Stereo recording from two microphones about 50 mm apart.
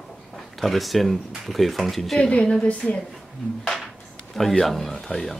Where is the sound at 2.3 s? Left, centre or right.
Centre.